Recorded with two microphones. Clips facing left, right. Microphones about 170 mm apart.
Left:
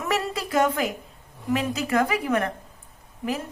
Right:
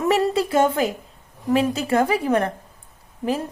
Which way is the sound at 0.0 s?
30° right (ahead or behind).